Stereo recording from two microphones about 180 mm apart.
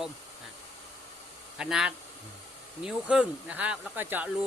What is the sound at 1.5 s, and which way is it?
Speech, 5° right (ahead or behind).